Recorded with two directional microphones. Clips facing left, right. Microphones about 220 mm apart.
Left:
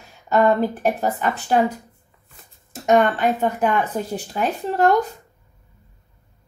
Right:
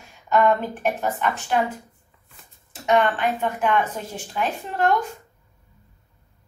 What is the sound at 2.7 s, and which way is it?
Speech, 45° left (ahead or behind).